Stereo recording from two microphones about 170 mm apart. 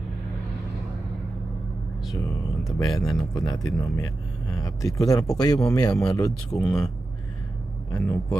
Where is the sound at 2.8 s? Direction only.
Centre (ahead or behind).